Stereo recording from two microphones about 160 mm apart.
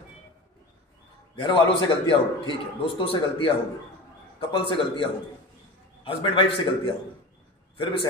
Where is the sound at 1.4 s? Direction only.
30° left (ahead or behind).